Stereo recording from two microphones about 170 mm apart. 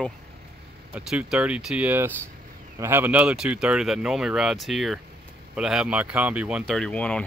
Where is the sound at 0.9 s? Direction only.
5° right (ahead or behind).